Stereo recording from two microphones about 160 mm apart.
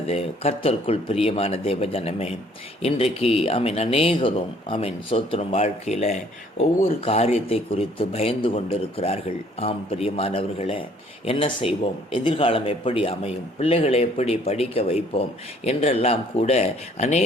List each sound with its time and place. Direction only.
0.1 s a man's voice: 40° left (ahead or behind)